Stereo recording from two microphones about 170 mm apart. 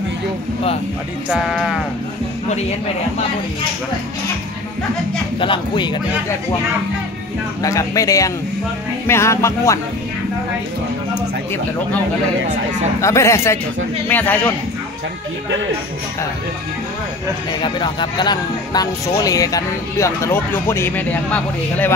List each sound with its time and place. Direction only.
1.3 s music: centre (ahead or behind)
5.4 s speech: 30° left (ahead or behind)
7.6 s speech: 20° left (ahead or behind)
9.0 s music: 15° left (ahead or behind)
13.0 s music: 15° left (ahead or behind)
17.5 s speech: 25° left (ahead or behind); by 21.9 s 10° left (ahead or behind)